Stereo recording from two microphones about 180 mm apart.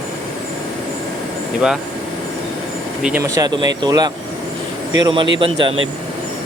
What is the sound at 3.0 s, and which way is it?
Speech, 5° right (ahead or behind).